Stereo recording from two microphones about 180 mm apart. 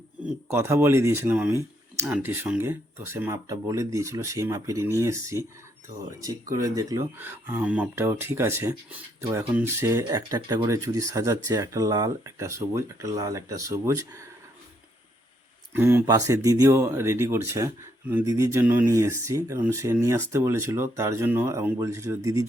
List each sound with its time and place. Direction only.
0.4 s speech: 15° right (ahead or behind)
6.5 s speech: 20° right (ahead or behind)
15.7 s speech: 10° right (ahead or behind)